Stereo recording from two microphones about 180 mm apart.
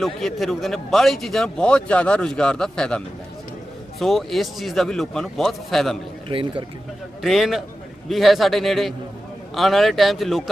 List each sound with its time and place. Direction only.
0.0 s a man's voice: centre (ahead or behind)
4.0 s a man's voice: centre (ahead or behind)
6.2 s speech: 30° right (ahead or behind)
7.2 s a man's voice: centre (ahead or behind)